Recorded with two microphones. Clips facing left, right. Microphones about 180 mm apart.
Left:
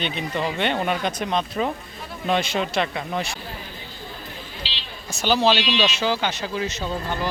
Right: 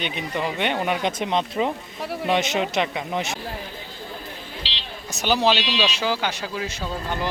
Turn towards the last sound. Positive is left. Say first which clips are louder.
# left 1 dB
turn(degrees=-15)  # may be behind; listen again after turning